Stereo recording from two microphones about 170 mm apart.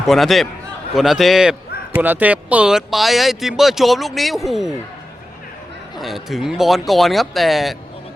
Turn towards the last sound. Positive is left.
turn(degrees=0)  # may be behind; listen again after turning